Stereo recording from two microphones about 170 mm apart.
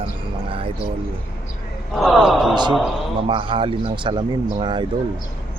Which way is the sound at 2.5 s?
25° right (ahead or behind).